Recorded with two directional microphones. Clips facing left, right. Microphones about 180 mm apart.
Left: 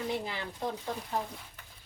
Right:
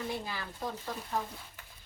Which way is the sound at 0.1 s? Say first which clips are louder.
Left 3 dB; 20° left (ahead or behind).